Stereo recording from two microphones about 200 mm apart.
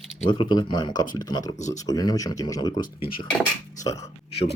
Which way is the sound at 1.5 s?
35° left (ahead or behind).